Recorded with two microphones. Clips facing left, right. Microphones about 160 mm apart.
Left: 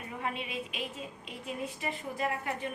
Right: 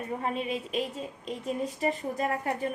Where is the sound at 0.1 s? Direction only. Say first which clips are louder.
Right 5 dB; 35° right (ahead or behind).